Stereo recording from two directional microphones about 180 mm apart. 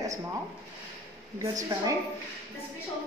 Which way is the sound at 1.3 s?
20° right (ahead or behind).